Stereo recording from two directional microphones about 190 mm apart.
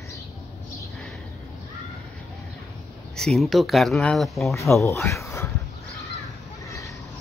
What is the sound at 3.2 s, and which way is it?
Speech, centre (ahead or behind).